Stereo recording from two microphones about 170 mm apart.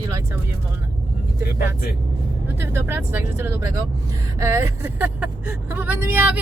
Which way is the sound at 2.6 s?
15° right (ahead or behind).